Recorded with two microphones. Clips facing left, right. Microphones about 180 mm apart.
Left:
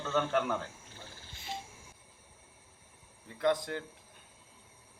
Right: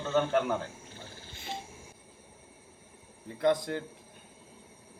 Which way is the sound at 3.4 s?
35° right (ahead or behind).